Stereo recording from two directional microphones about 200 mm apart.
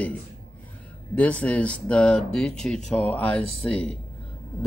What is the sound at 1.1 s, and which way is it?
A man's voice, 5° left (ahead or behind).